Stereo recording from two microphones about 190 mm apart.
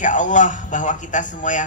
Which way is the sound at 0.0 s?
40° left (ahead or behind).